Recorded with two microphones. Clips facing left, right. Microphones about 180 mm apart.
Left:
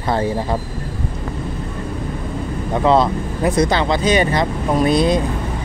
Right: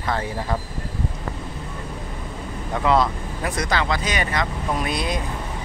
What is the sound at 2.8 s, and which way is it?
Speech, 25° left (ahead or behind).